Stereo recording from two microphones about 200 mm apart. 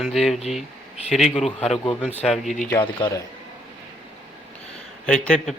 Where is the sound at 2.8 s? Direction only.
20° left (ahead or behind).